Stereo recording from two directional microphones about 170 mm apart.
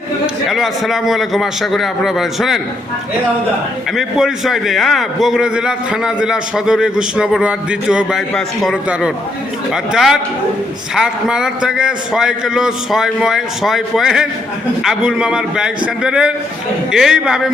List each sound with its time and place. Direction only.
0.4 s a man's voice: centre (ahead or behind)
3.9 s a man's voice: centre (ahead or behind)